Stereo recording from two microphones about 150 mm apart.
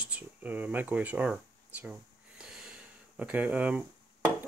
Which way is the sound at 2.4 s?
5° right (ahead or behind).